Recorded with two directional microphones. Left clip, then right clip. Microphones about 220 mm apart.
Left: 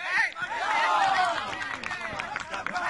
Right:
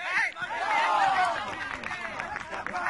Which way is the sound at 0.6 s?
40° left (ahead or behind).